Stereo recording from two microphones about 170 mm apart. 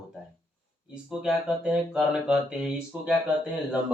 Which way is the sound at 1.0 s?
5° right (ahead or behind).